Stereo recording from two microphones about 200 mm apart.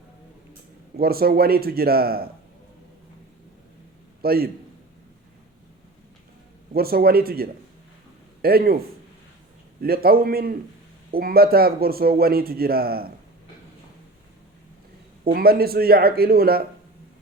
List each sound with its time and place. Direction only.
0.9 s a man's voice: 50° right (ahead or behind)
4.2 s a man's voice: 50° right (ahead or behind)
6.7 s a man's voice: 50° right (ahead or behind)
9.8 s a man's voice: 50° right (ahead or behind)
15.2 s a man's voice: 50° right (ahead or behind)